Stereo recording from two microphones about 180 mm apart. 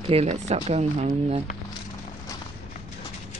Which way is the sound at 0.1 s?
35° right (ahead or behind).